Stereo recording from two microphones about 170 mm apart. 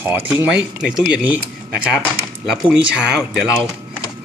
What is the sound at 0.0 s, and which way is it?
Speech, 10° right (ahead or behind).